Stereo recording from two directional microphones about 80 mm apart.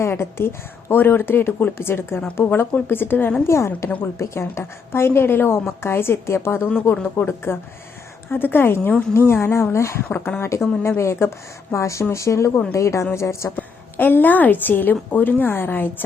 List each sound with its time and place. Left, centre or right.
0.0 s a woman's voice: left
3.8 s a woman's voice: left
13.6 s speech: left